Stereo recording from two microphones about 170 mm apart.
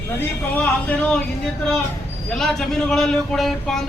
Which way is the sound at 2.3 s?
Centre (ahead or behind).